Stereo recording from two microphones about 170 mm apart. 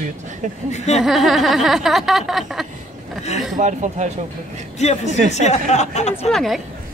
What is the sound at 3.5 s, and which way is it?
Speech, 45° right (ahead or behind).